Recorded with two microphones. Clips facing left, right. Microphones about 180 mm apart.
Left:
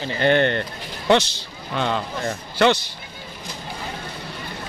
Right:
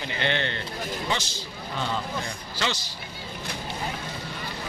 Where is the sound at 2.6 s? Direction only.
60° left (ahead or behind).